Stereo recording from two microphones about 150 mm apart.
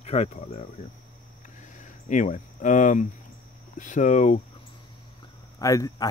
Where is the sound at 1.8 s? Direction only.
55° left (ahead or behind).